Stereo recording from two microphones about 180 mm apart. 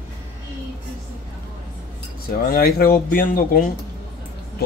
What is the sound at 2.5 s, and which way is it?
Speech, 55° left (ahead or behind).